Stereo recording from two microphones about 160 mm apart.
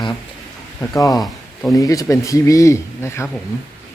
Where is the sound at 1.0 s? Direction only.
25° left (ahead or behind).